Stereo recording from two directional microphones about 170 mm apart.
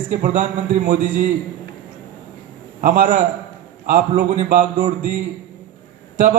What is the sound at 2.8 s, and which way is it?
Speech, 55° right (ahead or behind).